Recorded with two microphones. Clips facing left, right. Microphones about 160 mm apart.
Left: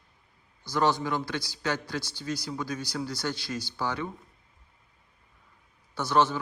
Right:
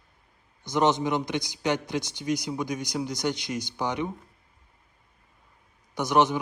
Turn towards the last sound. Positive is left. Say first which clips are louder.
# right 2 dB
turn(degrees=-15)  # may be behind; listen again after turning